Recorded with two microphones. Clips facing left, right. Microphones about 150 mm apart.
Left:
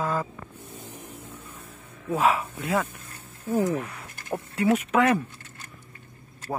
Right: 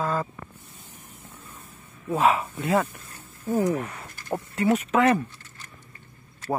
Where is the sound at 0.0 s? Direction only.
15° left (ahead or behind).